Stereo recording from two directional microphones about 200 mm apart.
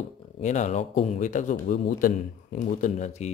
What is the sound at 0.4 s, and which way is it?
Speech, 35° left (ahead or behind).